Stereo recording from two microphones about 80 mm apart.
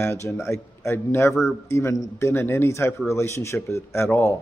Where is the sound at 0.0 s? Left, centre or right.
Left.